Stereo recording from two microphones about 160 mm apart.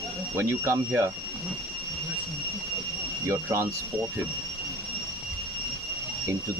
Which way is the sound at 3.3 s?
15° right (ahead or behind).